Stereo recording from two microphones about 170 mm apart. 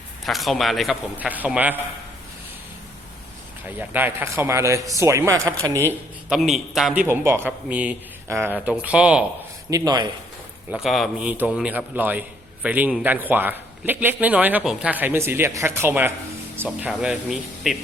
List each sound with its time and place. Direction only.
0.3 s a man's voice: centre (ahead or behind)
3.7 s a man's voice: 10° right (ahead or behind)
5.9 s a man's voice: 5° right (ahead or behind)
9.6 s a man's voice: 20° right (ahead or behind)
10.8 s a man's voice: centre (ahead or behind)